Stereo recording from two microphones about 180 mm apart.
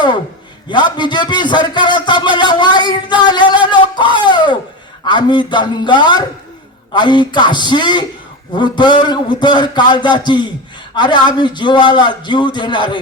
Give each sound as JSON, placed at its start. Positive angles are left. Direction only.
{"t": 0.7, "sound": "a man's voice", "side_deg": 25}